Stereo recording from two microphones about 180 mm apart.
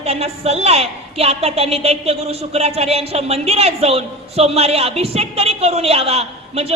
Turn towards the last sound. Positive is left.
turn(degrees=-35)  # may be behind; listen again after turning